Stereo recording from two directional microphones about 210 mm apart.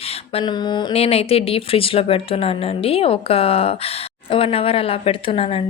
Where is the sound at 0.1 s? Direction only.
25° left (ahead or behind).